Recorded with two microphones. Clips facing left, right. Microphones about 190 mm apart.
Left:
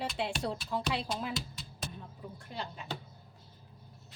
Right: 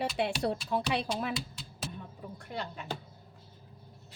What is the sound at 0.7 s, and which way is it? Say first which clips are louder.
Speech: right 3 dB; 65° right (ahead or behind).